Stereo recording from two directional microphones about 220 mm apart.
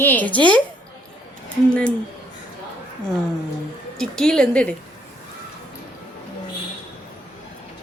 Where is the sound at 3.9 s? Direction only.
Centre (ahead or behind).